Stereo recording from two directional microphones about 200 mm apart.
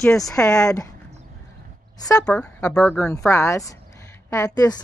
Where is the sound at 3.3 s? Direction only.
15° left (ahead or behind).